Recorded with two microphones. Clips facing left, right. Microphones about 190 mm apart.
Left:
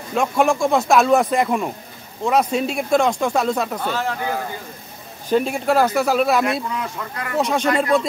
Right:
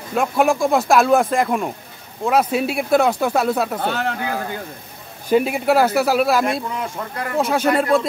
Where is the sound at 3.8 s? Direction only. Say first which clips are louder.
Right 1 dB; 65° right (ahead or behind).